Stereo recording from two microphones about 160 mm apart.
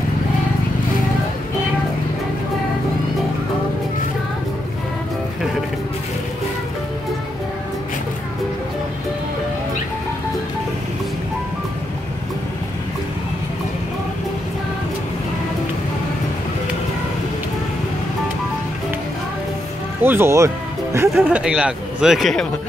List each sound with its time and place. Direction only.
20.0 s music: 15° right (ahead or behind)
21.2 s speech: 5° right (ahead or behind)